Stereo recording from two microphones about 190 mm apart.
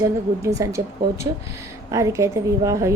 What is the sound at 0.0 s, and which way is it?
Speech, 15° right (ahead or behind).